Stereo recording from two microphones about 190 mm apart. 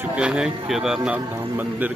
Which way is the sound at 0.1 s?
5° right (ahead or behind).